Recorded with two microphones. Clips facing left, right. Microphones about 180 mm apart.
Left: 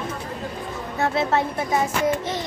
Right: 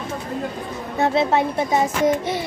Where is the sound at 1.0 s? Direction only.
20° right (ahead or behind).